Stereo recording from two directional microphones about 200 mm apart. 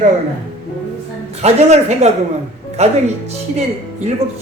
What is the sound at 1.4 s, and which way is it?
Speech, 35° right (ahead or behind).